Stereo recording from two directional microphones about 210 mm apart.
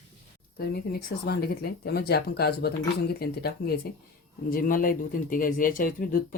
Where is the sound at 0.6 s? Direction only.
50° left (ahead or behind).